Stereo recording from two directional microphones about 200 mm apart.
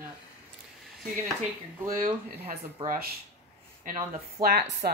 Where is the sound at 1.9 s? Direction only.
40° right (ahead or behind).